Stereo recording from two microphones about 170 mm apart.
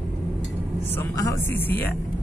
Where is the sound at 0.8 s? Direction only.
15° left (ahead or behind).